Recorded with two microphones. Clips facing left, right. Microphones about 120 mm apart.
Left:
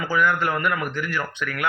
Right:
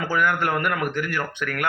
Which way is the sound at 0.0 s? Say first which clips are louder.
Left 1 dB; 55° right (ahead or behind).